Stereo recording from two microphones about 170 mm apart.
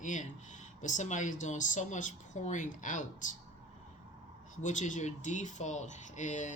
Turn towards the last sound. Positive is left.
turn(degrees=45)  # may be behind; listen again after turning